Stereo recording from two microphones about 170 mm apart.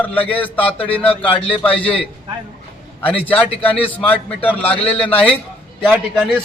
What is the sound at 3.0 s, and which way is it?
A man's voice, 10° left (ahead or behind).